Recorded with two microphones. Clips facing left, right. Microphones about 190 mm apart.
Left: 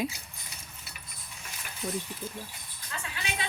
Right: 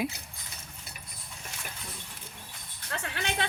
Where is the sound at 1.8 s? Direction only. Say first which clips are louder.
Left 13 dB; 55° left (ahead or behind).